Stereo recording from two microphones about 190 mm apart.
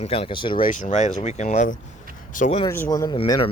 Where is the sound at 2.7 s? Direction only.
15° left (ahead or behind).